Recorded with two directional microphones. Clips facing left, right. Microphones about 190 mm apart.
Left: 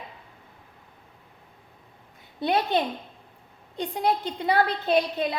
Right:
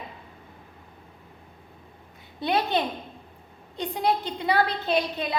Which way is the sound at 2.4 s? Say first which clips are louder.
Left 1 dB; 50° left (ahead or behind).